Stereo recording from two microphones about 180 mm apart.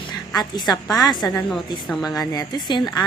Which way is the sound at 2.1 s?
20° left (ahead or behind).